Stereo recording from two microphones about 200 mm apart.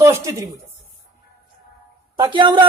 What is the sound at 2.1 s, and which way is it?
Speech, 25° right (ahead or behind).